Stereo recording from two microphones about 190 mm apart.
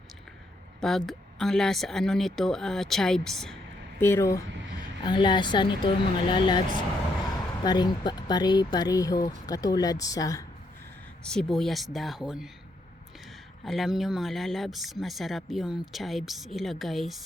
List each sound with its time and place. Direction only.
0.8 s speech: centre (ahead or behind)
4.0 s speech: 15° left (ahead or behind)
11.2 s speech: 5° left (ahead or behind)
13.7 s speech: centre (ahead or behind)